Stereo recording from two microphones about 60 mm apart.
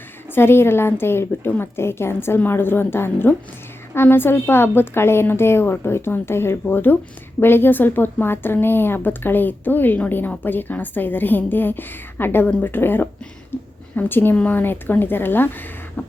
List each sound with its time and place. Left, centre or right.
0.3 s a woman's voice: left
13.5 s a sound: left
13.9 s speech: left